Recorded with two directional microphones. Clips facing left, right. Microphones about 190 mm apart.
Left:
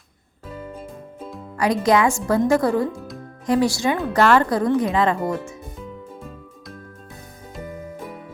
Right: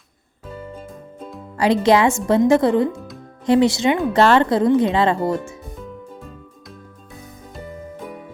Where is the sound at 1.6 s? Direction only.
25° right (ahead or behind).